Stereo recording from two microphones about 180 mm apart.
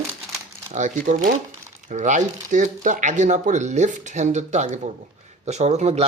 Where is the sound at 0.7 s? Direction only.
45° right (ahead or behind).